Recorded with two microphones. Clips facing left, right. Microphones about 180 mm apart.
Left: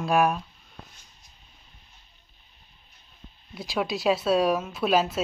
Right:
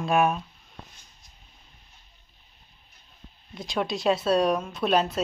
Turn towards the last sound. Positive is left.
turn(degrees=0)  # may be behind; listen again after turning